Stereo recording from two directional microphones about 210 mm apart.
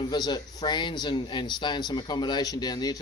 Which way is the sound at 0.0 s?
20° left (ahead or behind).